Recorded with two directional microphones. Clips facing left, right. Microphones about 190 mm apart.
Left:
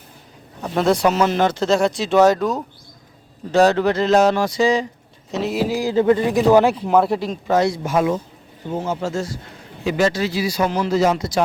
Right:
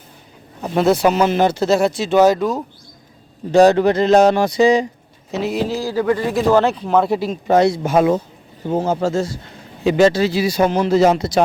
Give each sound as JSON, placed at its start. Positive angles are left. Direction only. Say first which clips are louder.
{"t": 0.6, "sound": "speech", "louder": "right 2 dB", "side_deg": -5}
{"t": 3.5, "sound": "speech", "louder": "right 4 dB", "side_deg": -15}
{"t": 5.3, "sound": "speech", "louder": "right 1 dB", "side_deg": 0}
{"t": 5.6, "sound": "speech", "louder": "left 5 dB", "side_deg": 15}
{"t": 7.1, "sound": "speech", "louder": "right 2 dB", "side_deg": -5}
{"t": 7.4, "sound": "a man's voice", "louder": "right 5 dB", "side_deg": -20}
{"t": 9.8, "sound": "a man's voice", "louder": "right 5 dB", "side_deg": -30}
{"t": 11.2, "sound": "speech", "louder": "right 4 dB", "side_deg": -60}